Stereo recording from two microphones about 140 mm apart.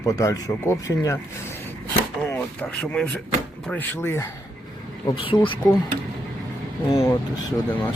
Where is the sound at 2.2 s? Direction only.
15° left (ahead or behind).